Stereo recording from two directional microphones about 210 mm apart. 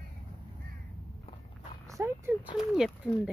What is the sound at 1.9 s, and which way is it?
Speech, 15° right (ahead or behind).